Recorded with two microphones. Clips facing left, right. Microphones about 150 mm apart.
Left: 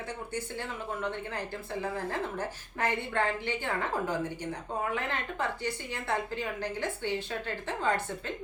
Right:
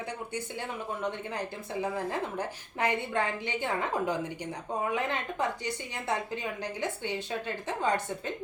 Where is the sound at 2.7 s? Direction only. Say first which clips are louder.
Right 1 dB; 15° right (ahead or behind).